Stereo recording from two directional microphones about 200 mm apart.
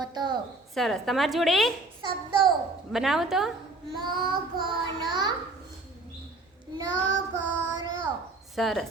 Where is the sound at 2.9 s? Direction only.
Centre (ahead or behind).